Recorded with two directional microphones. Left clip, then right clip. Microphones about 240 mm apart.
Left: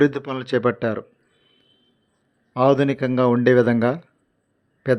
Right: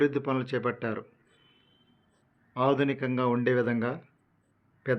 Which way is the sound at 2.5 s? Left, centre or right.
Left.